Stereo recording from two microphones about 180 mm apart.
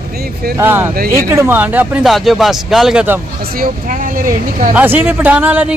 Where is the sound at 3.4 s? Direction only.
55° right (ahead or behind).